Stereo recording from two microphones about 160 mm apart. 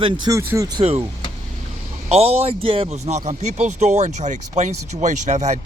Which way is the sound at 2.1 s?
40° right (ahead or behind).